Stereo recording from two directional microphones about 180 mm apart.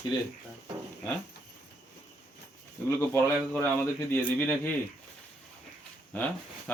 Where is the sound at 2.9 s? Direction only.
15° left (ahead or behind).